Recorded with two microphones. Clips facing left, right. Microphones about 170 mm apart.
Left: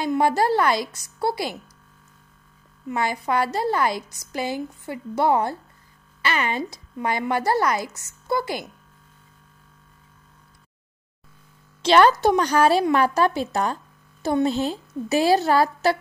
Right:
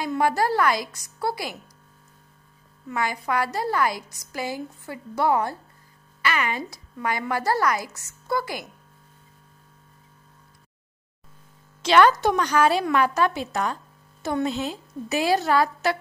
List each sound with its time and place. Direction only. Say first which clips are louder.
0.0 s a woman's voice: left 2 dB; 25° left (ahead or behind)
2.9 s a woman's voice: left 2 dB; 25° left (ahead or behind)
11.8 s a woman's voice: left 2 dB; 30° left (ahead or behind)